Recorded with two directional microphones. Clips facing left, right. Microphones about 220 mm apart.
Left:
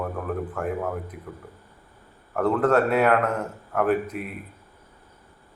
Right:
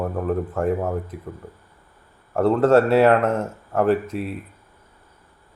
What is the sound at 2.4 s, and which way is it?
Speech, 25° right (ahead or behind).